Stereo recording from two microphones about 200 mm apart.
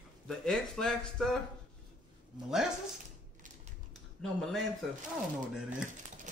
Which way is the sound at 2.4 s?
Centre (ahead or behind).